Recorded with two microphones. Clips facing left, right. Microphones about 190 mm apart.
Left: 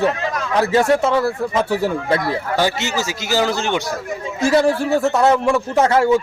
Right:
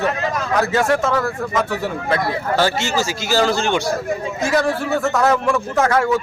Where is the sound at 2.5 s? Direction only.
15° left (ahead or behind).